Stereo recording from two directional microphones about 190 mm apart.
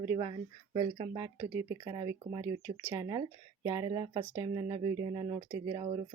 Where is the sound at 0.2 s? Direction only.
25° right (ahead or behind).